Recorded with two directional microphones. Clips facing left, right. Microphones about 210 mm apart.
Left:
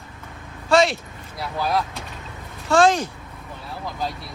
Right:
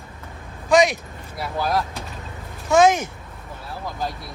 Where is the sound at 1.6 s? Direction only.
Centre (ahead or behind).